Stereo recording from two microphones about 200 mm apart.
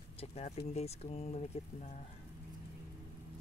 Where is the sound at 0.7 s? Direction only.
30° left (ahead or behind).